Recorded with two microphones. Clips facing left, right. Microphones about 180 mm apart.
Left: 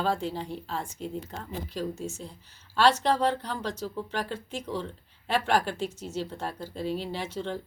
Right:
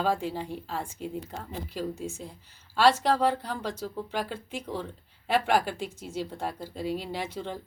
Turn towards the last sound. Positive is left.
turn(degrees=-10)  # may be behind; listen again after turning